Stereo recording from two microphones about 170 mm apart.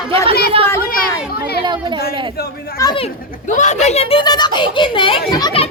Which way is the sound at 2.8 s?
25° left (ahead or behind).